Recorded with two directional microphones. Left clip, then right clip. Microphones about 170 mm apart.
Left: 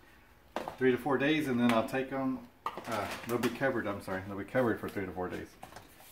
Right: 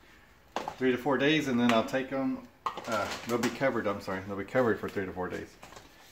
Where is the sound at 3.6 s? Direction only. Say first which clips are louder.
Right 3 dB; 25° right (ahead or behind).